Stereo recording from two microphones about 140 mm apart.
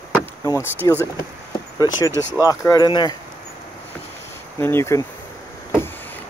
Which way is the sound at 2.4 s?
25° left (ahead or behind).